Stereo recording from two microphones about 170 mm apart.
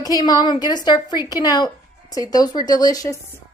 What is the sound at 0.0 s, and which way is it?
A woman's voice, 20° left (ahead or behind).